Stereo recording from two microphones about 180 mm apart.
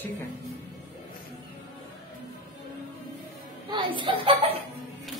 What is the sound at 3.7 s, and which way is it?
Speech, 25° right (ahead or behind).